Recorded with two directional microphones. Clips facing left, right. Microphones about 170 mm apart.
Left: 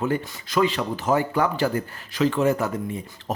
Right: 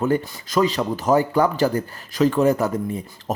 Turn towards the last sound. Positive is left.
turn(degrees=-35)  # may be behind; listen again after turning